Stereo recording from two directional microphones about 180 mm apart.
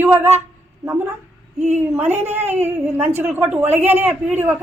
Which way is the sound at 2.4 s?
35° right (ahead or behind).